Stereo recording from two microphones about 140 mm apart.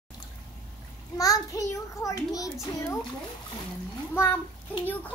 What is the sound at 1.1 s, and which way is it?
A child's voice, 25° left (ahead or behind).